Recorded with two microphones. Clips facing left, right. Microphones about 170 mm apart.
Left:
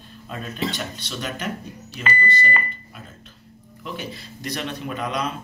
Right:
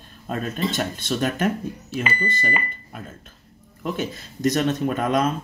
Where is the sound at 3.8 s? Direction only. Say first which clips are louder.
Right 6 dB; 45° right (ahead or behind).